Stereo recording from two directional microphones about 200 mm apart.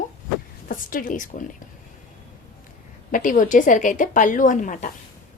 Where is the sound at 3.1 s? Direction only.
40° left (ahead or behind).